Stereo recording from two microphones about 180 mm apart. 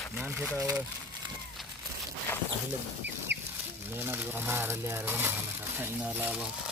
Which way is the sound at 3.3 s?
70° right (ahead or behind).